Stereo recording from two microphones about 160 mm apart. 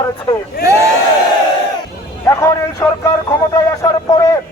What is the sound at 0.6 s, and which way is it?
Speech, 85° left.